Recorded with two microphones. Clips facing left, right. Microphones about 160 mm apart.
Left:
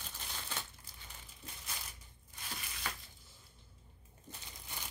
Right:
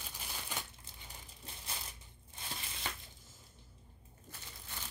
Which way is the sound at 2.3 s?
25° right (ahead or behind).